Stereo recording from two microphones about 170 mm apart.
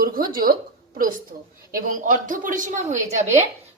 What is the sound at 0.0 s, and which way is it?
A woman's voice, 60° right (ahead or behind).